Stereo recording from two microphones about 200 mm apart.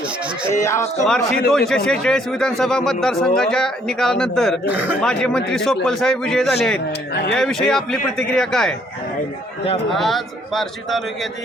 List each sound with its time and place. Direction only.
0.5 s speech: 15° left (ahead or behind)
1.0 s speech: centre (ahead or behind)
4.6 s speech: 10° right (ahead or behind)
4.9 s speech: 5° left (ahead or behind)
7.1 s speech: 55° left (ahead or behind)
7.7 s speech: centre (ahead or behind)
9.9 s speech: centre (ahead or behind)